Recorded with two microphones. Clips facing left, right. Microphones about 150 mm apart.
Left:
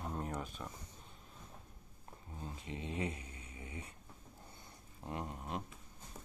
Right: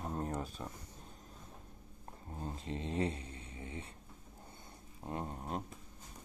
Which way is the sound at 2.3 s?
35° right (ahead or behind).